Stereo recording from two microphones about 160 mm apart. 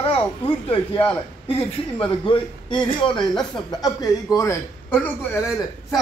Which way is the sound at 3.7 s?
25° left (ahead or behind).